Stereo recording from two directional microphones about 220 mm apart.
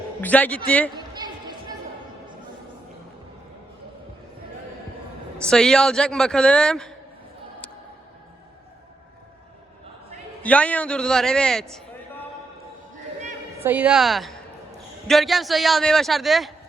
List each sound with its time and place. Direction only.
0.2 s a man's voice: 5° left (ahead or behind)
0.9 s a sound: 20° right (ahead or behind)
5.4 s speech: centre (ahead or behind)
10.4 s speech: 5° left (ahead or behind)
13.6 s speech: 5° right (ahead or behind)